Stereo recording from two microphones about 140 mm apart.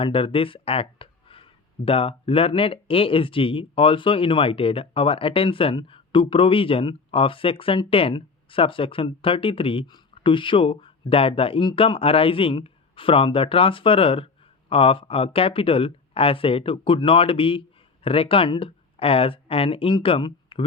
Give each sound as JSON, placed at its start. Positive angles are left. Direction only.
{"t": 0.0, "sound": "speech", "side_deg": 40}